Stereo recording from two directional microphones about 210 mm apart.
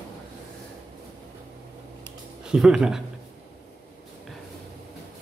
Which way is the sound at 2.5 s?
5° right (ahead or behind).